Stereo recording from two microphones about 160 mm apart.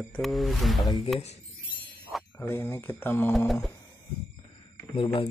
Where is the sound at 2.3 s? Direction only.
15° left (ahead or behind).